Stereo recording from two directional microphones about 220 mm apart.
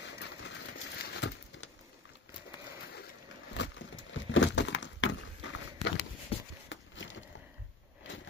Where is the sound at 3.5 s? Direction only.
55° left (ahead or behind).